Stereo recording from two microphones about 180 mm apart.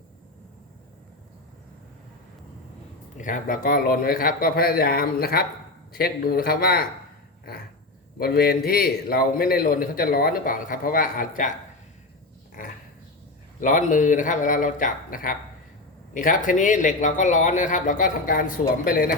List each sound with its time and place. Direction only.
3.2 s a man's voice: 45° left (ahead or behind)
8.2 s a man's voice: 60° left (ahead or behind)
12.6 s dog: 50° left (ahead or behind)
13.6 s a man's voice: 45° left (ahead or behind)